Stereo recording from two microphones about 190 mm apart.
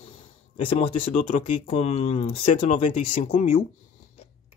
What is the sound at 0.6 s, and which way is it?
Speech, 25° left (ahead or behind).